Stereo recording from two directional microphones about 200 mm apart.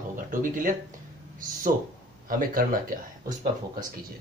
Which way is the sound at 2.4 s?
45° right (ahead or behind).